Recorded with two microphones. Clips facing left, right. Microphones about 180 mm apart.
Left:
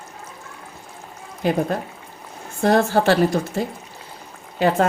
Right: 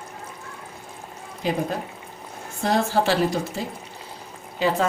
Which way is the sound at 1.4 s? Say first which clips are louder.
Left 4 dB; 55° left (ahead or behind).